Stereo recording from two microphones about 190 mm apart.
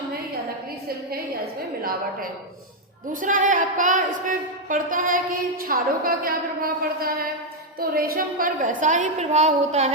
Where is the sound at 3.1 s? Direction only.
45° right (ahead or behind).